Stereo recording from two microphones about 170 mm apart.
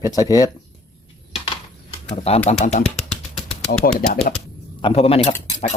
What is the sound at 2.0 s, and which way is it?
Speech, 35° left (ahead or behind).